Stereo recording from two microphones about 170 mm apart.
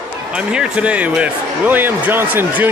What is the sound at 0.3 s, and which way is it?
Speech, 5° right (ahead or behind).